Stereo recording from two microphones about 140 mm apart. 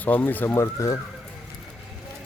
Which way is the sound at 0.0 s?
10° left (ahead or behind).